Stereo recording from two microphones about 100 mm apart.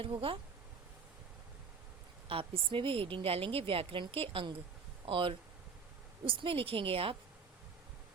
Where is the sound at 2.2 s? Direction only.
65° right (ahead or behind).